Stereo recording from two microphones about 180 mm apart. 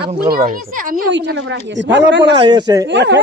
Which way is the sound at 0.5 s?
50° right (ahead or behind).